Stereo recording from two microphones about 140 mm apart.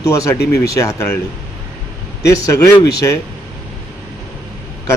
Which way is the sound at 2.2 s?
25° left (ahead or behind).